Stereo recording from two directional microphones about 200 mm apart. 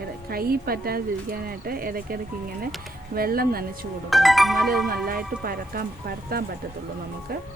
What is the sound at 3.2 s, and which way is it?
Speech, 45° right (ahead or behind).